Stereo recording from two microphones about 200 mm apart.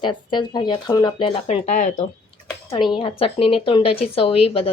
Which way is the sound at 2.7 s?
25° left (ahead or behind).